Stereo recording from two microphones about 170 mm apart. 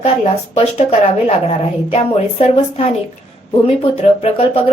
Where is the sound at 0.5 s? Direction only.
40° left (ahead or behind).